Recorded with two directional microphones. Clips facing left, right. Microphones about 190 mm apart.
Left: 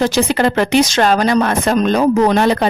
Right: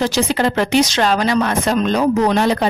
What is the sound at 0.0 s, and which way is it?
A woman's voice, 55° left (ahead or behind).